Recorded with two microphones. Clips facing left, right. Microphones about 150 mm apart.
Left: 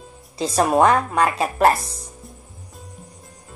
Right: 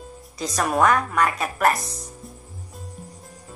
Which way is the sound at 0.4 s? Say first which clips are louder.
Left 4 dB; 30° left (ahead or behind).